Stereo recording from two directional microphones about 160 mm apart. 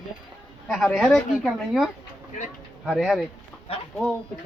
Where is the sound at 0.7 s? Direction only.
Centre (ahead or behind).